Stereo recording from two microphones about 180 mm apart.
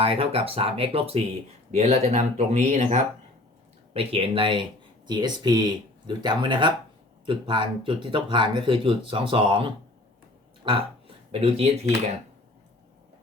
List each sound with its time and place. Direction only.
0.0 s speech: 30° right (ahead or behind)
10.6 s burping: 30° right (ahead or behind)
11.3 s speech: 35° right (ahead or behind)